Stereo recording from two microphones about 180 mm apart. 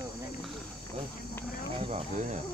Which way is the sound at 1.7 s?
35° right (ahead or behind).